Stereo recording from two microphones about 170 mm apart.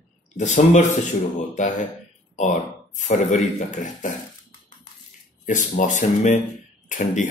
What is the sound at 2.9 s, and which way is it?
Speech, 45° left (ahead or behind).